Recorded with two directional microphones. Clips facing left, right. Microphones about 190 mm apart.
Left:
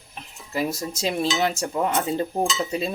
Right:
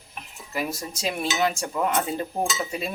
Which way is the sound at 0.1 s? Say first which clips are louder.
Left 2 dB; 25° left (ahead or behind).